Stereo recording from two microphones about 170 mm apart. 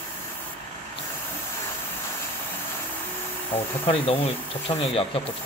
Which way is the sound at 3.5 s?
35° left (ahead or behind).